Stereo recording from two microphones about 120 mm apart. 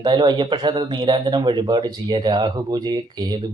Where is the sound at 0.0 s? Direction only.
40° right (ahead or behind).